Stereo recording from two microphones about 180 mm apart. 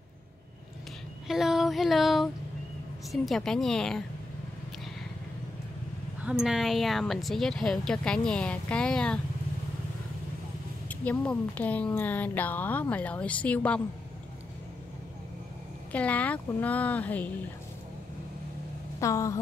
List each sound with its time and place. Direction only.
1.2 s a sound: centre (ahead or behind)
3.1 s speech: centre (ahead or behind)
6.2 s speech: 5° right (ahead or behind)
10.9 s speech: 10° left (ahead or behind)
15.9 s speech: 10° left (ahead or behind)
18.9 s speech: 15° left (ahead or behind)